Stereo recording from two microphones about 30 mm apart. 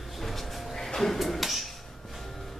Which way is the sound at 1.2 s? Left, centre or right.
Centre.